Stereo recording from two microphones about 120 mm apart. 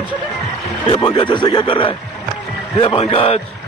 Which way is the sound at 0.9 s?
40° left (ahead or behind).